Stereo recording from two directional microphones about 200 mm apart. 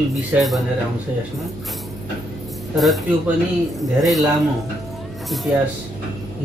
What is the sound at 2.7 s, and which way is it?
Speech, centre (ahead or behind).